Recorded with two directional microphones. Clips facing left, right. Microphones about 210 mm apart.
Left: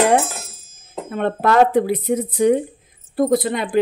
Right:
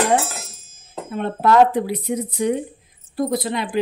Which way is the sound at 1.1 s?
60° left (ahead or behind).